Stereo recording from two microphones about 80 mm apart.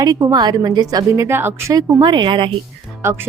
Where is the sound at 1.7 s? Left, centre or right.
Right.